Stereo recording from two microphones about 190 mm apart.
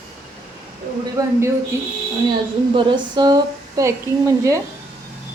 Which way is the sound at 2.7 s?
25° right (ahead or behind).